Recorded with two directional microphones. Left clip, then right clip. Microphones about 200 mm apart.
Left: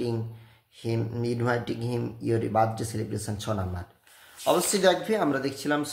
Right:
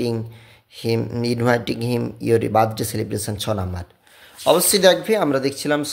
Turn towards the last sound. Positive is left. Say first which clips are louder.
# right 7 dB
turn(degrees=-35)  # may be behind; listen again after turning